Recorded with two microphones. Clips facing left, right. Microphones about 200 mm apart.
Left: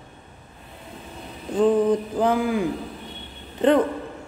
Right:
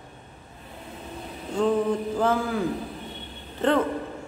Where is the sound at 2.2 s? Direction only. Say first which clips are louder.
Left 3 dB; 15° left (ahead or behind).